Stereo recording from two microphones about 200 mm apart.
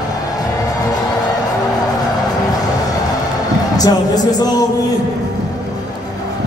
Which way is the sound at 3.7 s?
20° left (ahead or behind).